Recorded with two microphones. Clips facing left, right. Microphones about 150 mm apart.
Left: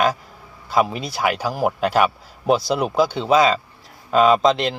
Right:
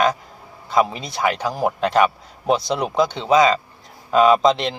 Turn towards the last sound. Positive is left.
turn(degrees=0)  # may be behind; listen again after turning